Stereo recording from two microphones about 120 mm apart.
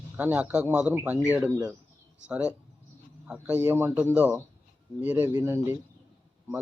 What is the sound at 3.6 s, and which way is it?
Speech, 15° right (ahead or behind).